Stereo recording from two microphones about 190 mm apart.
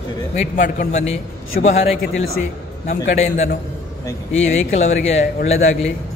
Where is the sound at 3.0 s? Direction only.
40° left (ahead or behind).